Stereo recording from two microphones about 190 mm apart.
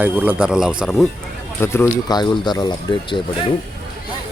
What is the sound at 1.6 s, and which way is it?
Speech, 10° left (ahead or behind).